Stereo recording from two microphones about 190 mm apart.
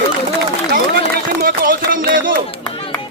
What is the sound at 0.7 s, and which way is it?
Speech, 55° right (ahead or behind).